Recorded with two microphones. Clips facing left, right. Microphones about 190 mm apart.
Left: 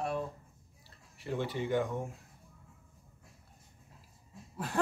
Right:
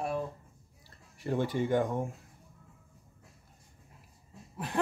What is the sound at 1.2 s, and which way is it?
Speech, 45° right (ahead or behind).